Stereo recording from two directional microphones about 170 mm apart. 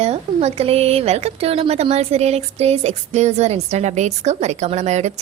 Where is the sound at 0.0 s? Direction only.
40° right (ahead or behind).